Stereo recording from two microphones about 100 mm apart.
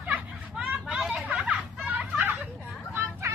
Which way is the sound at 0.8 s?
5° right (ahead or behind).